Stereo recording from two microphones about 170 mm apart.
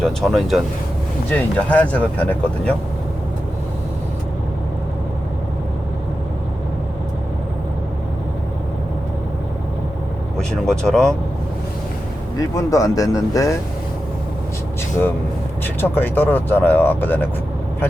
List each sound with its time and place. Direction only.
0.0 s speech: centre (ahead or behind)
10.3 s speech: 5° left (ahead or behind)
12.4 s speech: 20° left (ahead or behind)
15.6 s speech: 10° left (ahead or behind)